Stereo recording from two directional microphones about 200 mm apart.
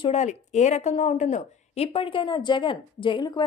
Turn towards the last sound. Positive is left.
turn(degrees=25)  # may be behind; listen again after turning